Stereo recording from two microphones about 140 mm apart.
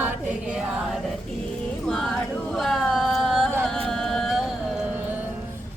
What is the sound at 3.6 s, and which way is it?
Music, 5° left (ahead or behind).